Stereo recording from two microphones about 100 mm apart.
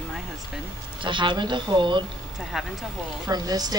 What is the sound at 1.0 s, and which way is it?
Speech, 55° right (ahead or behind).